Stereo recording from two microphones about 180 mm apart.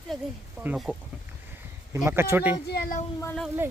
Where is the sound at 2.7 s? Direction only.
55° left (ahead or behind).